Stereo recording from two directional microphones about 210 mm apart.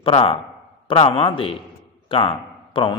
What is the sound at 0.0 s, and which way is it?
A man's voice, 25° left (ahead or behind).